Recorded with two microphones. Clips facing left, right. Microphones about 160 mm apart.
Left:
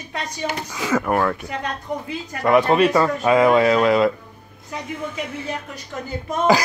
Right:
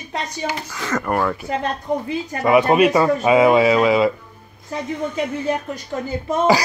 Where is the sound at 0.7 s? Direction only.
10° left (ahead or behind).